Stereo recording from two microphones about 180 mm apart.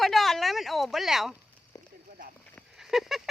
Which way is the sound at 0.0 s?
Centre (ahead or behind).